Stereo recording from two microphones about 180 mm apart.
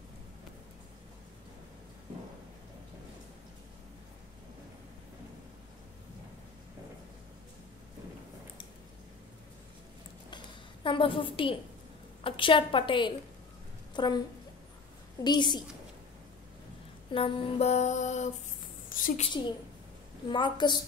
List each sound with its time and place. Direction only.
10.3 s a sound: 30° left (ahead or behind)
12.2 s a woman's voice: 30° left (ahead or behind)
15.2 s a woman's voice: 25° left (ahead or behind)
17.1 s music: 30° left (ahead or behind)
18.9 s a sound: 50° left (ahead or behind)
19.2 s a woman's voice: 25° left (ahead or behind)